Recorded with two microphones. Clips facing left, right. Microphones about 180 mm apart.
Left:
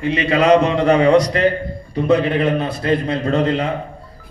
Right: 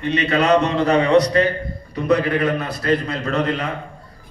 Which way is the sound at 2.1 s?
25° left (ahead or behind).